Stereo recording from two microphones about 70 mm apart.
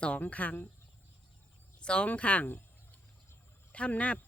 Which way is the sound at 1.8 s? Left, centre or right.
Centre.